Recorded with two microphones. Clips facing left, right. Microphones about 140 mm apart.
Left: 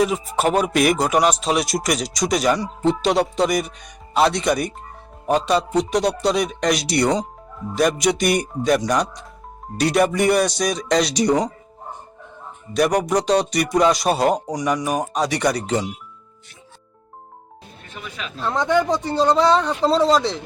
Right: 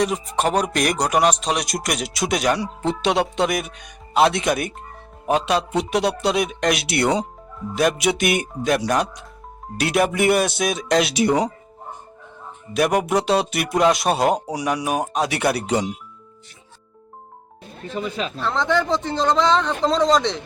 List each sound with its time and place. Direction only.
0.0 s speech: 5° left (ahead or behind)
12.7 s speech: 5° right (ahead or behind)
17.9 s speech: 35° right (ahead or behind)
18.4 s speech: 10° left (ahead or behind)